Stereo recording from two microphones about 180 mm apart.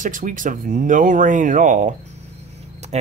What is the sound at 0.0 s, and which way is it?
Speech, 45° right (ahead or behind).